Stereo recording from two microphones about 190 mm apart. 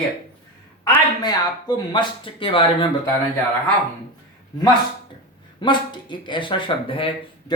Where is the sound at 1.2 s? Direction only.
20° left (ahead or behind).